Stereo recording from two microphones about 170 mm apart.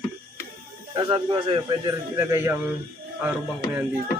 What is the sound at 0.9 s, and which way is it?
Speech, 30° right (ahead or behind).